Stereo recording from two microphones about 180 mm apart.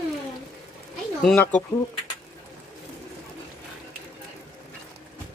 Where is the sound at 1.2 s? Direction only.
5° left (ahead or behind).